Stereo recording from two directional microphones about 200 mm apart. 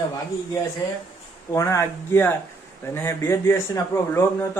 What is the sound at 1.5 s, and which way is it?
Speech, 15° left (ahead or behind).